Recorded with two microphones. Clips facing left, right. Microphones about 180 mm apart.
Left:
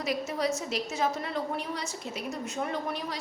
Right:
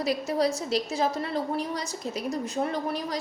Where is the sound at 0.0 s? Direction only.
35° right (ahead or behind).